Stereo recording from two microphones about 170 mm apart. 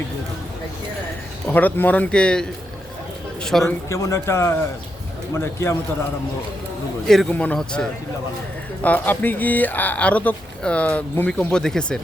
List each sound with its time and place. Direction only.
1.5 s speech: 10° left (ahead or behind)
3.6 s speech: 15° left (ahead or behind)
7.1 s speech: 5° left (ahead or behind)